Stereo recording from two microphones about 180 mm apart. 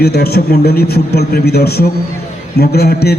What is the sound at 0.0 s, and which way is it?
A man's voice, 60° left (ahead or behind).